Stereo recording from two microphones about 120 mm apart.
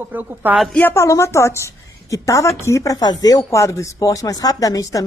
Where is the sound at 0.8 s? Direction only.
20° left (ahead or behind).